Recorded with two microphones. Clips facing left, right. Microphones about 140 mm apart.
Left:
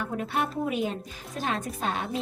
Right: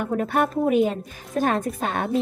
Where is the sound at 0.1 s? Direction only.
50° right (ahead or behind).